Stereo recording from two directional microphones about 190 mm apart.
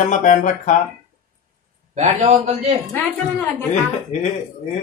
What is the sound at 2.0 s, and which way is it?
Speech, 35° right (ahead or behind).